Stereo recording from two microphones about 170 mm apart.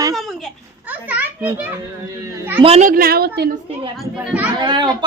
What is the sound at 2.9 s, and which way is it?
Speech, 60° right (ahead or behind).